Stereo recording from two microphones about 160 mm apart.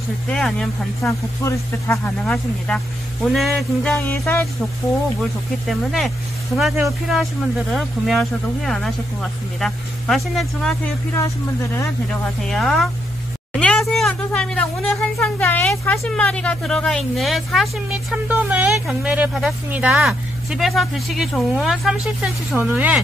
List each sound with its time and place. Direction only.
0.3 s a woman's voice: 5° left (ahead or behind)
1.4 s speech: 15° left (ahead or behind)
2.2 s a woman's voice: 5° left (ahead or behind)
5.7 s a woman's voice: centre (ahead or behind)
11.1 s speech: 15° left (ahead or behind)
12.1 s a woman's voice: 5° left (ahead or behind)
13.5 s a sound: 5° left (ahead or behind)
16.0 s a woman's voice: 5° left (ahead or behind); by 22.9 s 10° right (ahead or behind)